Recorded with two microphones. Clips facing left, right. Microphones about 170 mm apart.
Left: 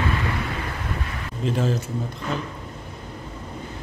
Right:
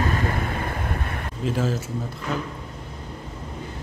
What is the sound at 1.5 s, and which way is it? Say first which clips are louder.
Speech: left 1 dB; 5° right (ahead or behind).